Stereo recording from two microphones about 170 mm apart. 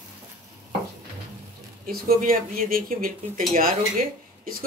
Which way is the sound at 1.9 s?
60° right (ahead or behind).